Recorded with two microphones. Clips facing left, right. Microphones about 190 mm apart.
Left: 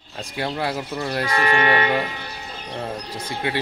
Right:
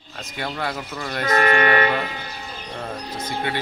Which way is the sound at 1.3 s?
45° right (ahead or behind).